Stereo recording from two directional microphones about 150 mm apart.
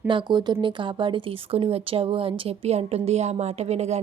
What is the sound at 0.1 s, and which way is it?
Speech, 30° right (ahead or behind).